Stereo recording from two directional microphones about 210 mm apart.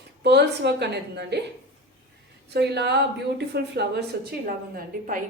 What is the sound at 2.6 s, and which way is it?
Speech, 55° right (ahead or behind).